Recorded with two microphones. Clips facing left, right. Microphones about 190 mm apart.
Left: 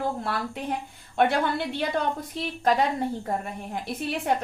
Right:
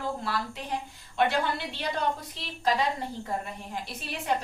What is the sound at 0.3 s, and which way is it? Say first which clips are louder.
A woman's voice: left 3 dB; 55° left (ahead or behind).